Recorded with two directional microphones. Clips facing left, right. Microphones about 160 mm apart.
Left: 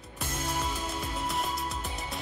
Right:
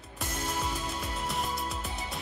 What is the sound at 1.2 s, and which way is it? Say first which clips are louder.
Music: even; centre (ahead or behind).